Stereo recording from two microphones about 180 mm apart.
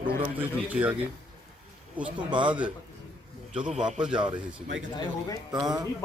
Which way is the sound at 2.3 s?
25° right (ahead or behind).